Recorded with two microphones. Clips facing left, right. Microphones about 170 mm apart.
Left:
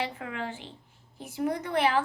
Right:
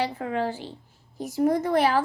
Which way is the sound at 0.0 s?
35° right (ahead or behind).